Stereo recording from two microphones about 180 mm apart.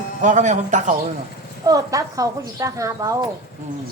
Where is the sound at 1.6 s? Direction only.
20° right (ahead or behind).